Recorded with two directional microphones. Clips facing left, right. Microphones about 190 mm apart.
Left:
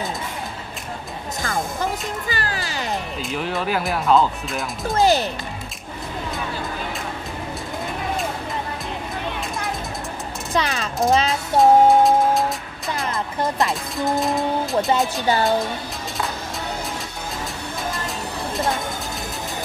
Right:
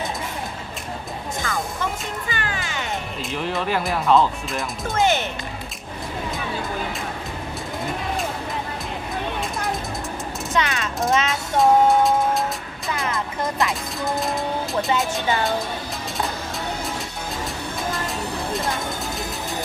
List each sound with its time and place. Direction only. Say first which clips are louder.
1.4 s music: left 3 dB; 40° left (ahead or behind)
3.2 s speech: right 2 dB; centre (ahead or behind)
4.9 s speech: left 3 dB; 35° left (ahead or behind)
10.5 s speech: left 1 dB; 35° left (ahead or behind)
11.2 s music: left 2 dB; centre (ahead or behind)
13.0 s music: left 2 dB; 35° left (ahead or behind)
13.7 s speech: left 3 dB; centre (ahead or behind)
18.5 s a sound: left 4 dB; centre (ahead or behind)